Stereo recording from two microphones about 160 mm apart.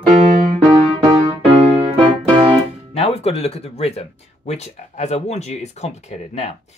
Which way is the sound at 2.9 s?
40° left (ahead or behind).